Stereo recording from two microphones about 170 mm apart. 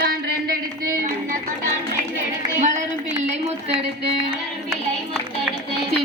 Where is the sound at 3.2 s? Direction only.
40° right (ahead or behind).